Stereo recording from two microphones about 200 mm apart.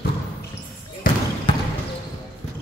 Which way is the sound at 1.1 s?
45° left (ahead or behind).